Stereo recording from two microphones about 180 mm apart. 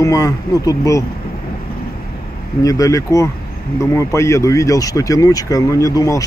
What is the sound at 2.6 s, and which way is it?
Speech, 20° left (ahead or behind).